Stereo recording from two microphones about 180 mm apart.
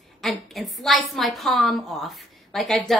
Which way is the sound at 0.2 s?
Centre (ahead or behind).